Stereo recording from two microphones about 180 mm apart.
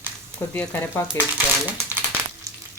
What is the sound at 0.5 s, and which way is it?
Speech, 10° left (ahead or behind).